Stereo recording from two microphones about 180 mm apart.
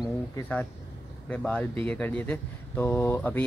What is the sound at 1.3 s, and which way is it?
Speech, 5° left (ahead or behind).